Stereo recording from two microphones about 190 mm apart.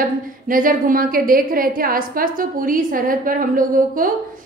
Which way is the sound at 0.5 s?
45° right (ahead or behind).